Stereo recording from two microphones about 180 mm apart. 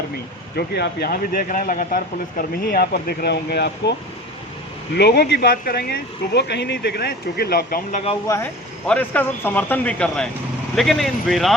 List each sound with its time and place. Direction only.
0.5 s speech: 65° left (ahead or behind)
4.9 s speech: 65° left (ahead or behind)
8.9 s speech: 10° left (ahead or behind)